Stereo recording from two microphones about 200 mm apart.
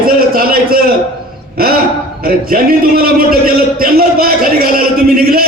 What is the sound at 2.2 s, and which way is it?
A man's voice, 45° right (ahead or behind).